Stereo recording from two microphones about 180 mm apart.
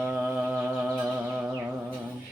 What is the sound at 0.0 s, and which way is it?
Music, 10° right (ahead or behind).